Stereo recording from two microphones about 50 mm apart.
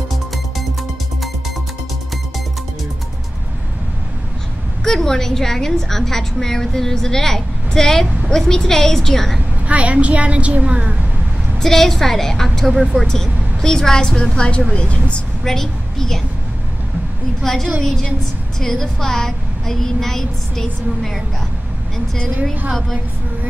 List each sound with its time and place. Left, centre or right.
4.8 s a woman's voice: centre
9.7 s a woman's voice: right
11.6 s a woman's voice: centre
13.0 s a woman's voice: centre
15.4 s a woman's voice: centre
17.4 s a woman's voice: centre